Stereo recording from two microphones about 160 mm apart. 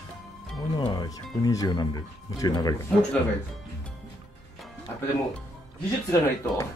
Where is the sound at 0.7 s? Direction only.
25° left (ahead or behind).